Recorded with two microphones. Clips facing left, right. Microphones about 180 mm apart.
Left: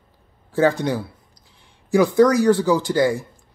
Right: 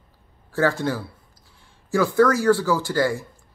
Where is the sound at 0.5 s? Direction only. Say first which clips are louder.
Left 3 dB; 15° left (ahead or behind).